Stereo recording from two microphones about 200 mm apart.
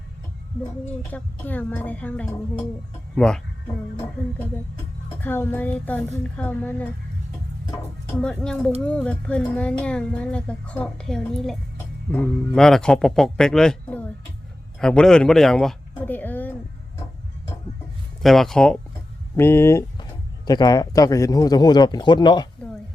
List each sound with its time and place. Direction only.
1.1 s a woman's voice: 10° left (ahead or behind)
5.2 s a woman's voice: 10° left (ahead or behind)
8.2 s speech: 5° left (ahead or behind)
18.2 s speech: centre (ahead or behind); by 22.4 s 20° left (ahead or behind)